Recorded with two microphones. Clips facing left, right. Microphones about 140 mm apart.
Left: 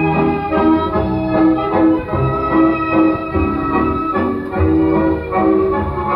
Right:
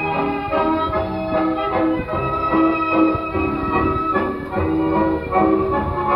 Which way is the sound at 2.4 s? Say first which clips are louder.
Left 3 dB; 5° right (ahead or behind).